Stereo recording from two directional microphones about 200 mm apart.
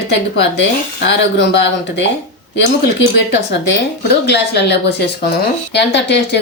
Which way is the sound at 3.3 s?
55° left (ahead or behind).